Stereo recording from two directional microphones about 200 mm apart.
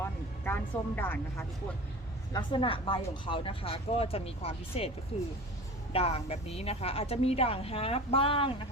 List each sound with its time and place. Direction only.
0.4 s a woman's voice: 10° left (ahead or behind)
2.3 s a woman's voice: 25° left (ahead or behind)
5.9 s a woman's voice: 30° left (ahead or behind)